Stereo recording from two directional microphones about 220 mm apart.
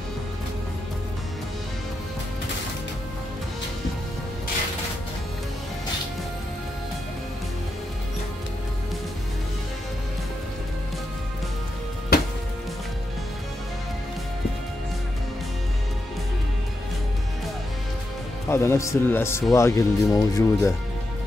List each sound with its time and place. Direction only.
12.1 s music: 45° left (ahead or behind)
18.5 s speech: 10° left (ahead or behind)